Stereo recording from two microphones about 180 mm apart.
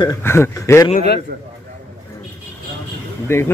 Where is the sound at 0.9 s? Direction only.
65° left (ahead or behind).